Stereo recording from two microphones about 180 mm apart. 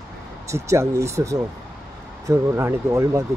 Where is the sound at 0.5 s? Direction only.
15° right (ahead or behind).